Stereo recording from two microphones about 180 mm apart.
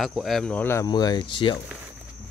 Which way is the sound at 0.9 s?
25° left (ahead or behind).